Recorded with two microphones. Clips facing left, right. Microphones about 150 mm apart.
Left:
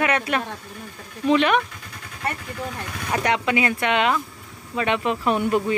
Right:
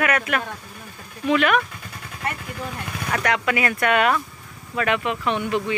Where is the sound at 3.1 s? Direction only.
25° left (ahead or behind); by 5.8 s 40° left (ahead or behind).